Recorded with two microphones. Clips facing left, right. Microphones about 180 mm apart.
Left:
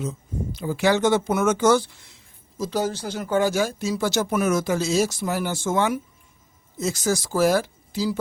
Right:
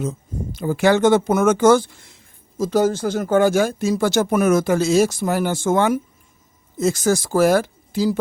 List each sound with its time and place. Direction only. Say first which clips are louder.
0.0 s speech: right 3 dB; 50° right (ahead or behind)